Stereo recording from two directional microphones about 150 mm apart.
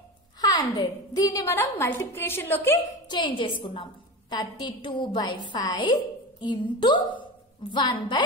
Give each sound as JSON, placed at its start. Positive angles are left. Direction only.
{"t": 0.4, "sound": "a woman's voice", "side_deg": 25}
{"t": 3.1, "sound": "a woman's voice", "side_deg": 30}